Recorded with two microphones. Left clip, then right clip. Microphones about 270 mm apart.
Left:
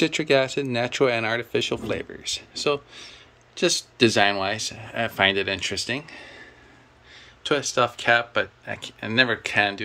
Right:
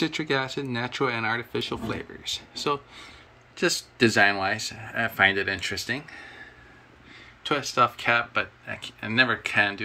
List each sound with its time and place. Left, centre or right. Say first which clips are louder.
0.0 s speech: left 6 dB; centre
7.4 s speech: left 1 dB; centre